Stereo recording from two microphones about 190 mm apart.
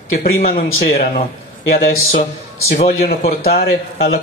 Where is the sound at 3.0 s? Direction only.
55° left (ahead or behind).